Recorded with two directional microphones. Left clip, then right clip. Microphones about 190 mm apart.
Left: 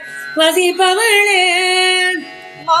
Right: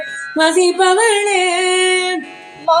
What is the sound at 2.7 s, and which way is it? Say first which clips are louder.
Music: right 1 dB; 30° left (ahead or behind).